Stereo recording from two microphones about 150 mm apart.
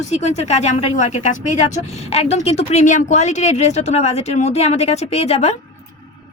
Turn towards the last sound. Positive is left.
turn(degrees=45)  # may be behind; listen again after turning